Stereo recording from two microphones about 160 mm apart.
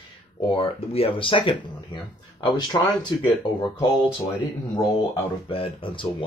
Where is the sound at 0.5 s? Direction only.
35° left (ahead or behind).